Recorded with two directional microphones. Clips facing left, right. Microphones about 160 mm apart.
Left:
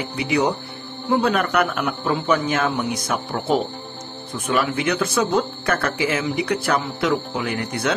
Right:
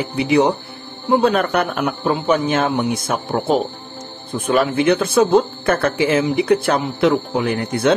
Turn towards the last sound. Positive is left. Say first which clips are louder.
# right 6 dB
turn(degrees=-25)  # may be behind; listen again after turning